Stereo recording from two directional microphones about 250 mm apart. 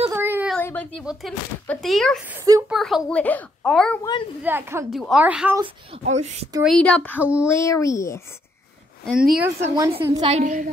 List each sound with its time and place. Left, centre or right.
0.1 s a sound: centre
0.6 s speech: centre
2.7 s speech: centre
4.0 s speech: centre
4.4 s a woman's voice: centre
5.6 s speech: right
6.6 s speech: centre
7.4 s speech: centre
9.0 s speech: centre
9.8 s speech: centre